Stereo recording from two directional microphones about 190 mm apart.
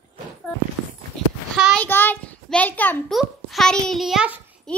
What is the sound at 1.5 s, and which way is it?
Child singing, centre (ahead or behind).